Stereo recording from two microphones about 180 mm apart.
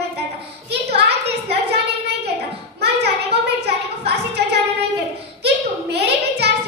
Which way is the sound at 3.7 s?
65° right (ahead or behind).